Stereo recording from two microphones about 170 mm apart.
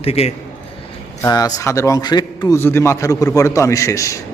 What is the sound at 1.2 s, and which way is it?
A man's voice, 20° left (ahead or behind).